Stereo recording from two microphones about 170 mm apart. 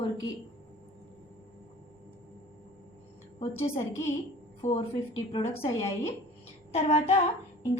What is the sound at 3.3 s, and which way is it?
Speech, 35° left (ahead or behind).